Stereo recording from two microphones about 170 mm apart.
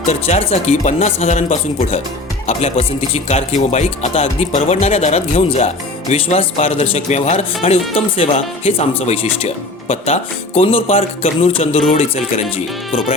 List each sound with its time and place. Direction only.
0.1 s speech: 40° left (ahead or behind)